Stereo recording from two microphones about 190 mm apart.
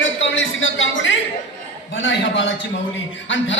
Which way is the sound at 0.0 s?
75° left (ahead or behind).